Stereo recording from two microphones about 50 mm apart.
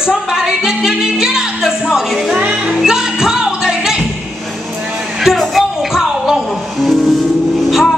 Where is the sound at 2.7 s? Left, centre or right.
Centre.